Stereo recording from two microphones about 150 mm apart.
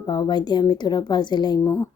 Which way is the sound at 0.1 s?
30° left (ahead or behind).